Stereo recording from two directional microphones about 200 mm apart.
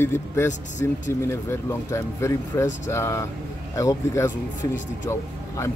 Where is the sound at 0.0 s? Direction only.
10° left (ahead or behind).